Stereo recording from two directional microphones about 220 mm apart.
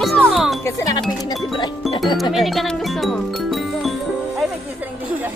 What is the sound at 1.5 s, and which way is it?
Music, 20° left (ahead or behind).